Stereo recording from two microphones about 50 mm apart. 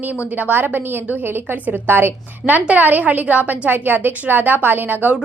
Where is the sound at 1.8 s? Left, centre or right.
Right.